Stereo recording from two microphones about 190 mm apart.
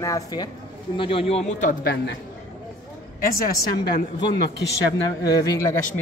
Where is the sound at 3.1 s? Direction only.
50° left (ahead or behind).